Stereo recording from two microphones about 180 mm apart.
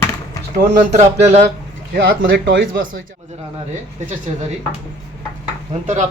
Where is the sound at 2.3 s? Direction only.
90° right.